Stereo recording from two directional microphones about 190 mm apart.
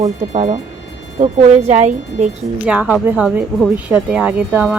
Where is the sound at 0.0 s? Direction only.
40° right (ahead or behind).